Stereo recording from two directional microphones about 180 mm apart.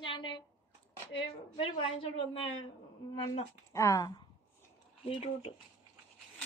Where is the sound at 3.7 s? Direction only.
20° left (ahead or behind).